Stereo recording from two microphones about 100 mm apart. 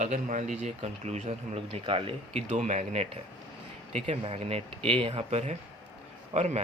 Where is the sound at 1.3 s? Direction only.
70° right (ahead or behind).